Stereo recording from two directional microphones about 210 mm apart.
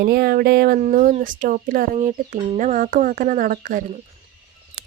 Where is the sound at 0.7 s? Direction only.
35° right (ahead or behind).